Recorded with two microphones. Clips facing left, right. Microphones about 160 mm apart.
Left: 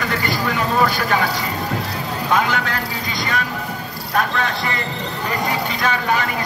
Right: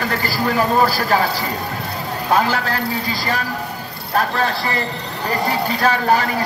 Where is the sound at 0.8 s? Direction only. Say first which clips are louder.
Right 2 dB; 35° right (ahead or behind).